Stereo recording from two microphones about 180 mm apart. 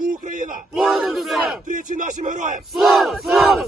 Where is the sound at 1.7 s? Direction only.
45° right (ahead or behind).